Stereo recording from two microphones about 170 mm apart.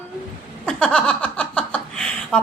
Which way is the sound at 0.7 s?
5° left (ahead or behind).